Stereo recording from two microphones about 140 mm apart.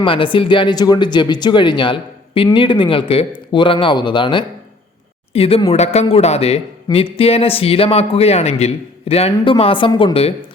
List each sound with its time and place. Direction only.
0.0 s a man's voice: 35° left (ahead or behind)